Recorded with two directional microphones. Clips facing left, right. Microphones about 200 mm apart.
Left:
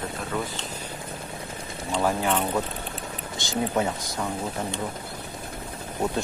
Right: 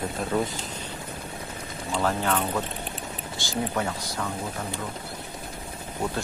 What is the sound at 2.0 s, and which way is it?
Speech, 10° left (ahead or behind).